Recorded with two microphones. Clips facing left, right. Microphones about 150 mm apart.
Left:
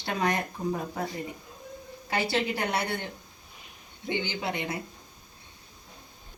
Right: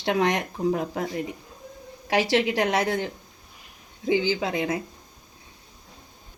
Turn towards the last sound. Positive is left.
turn(degrees=-90)